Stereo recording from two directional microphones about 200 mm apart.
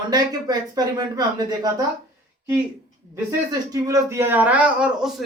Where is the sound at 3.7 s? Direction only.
15° right (ahead or behind).